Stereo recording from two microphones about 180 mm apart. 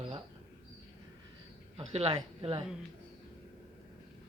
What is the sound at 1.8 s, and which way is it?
Speech, 30° right (ahead or behind).